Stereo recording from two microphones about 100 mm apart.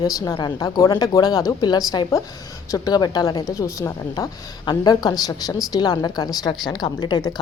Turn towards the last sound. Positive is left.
turn(degrees=45)  # may be behind; listen again after turning